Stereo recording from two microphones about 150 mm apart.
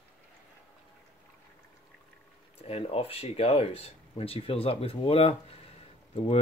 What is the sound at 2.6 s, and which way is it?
Speech, 40° left (ahead or behind).